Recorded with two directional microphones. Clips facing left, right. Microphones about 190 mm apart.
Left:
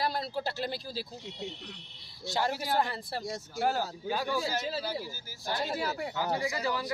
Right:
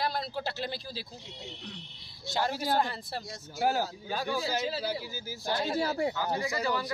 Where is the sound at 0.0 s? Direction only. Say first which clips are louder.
Left 1 dB; 5° left (ahead or behind).